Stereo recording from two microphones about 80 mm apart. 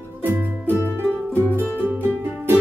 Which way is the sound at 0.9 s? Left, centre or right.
Right.